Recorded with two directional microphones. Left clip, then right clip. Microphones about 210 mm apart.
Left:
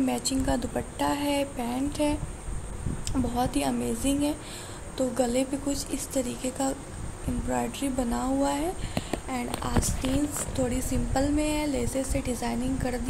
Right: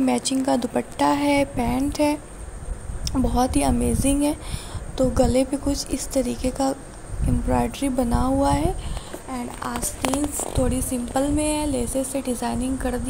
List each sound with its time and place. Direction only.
0.0 s speech: 20° right (ahead or behind)